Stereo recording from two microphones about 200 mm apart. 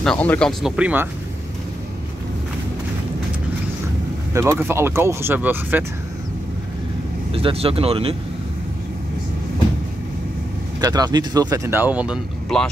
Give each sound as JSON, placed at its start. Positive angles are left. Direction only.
{"t": 0.0, "sound": "speech", "side_deg": 5}
{"t": 4.3, "sound": "speech", "side_deg": -10}
{"t": 7.3, "sound": "speech", "side_deg": -30}
{"t": 10.8, "sound": "speech", "side_deg": -20}